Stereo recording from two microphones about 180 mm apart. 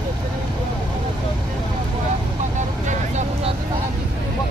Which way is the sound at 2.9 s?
40° right (ahead or behind).